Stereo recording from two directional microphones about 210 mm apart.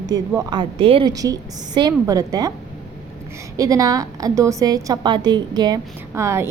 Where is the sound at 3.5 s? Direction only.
15° right (ahead or behind).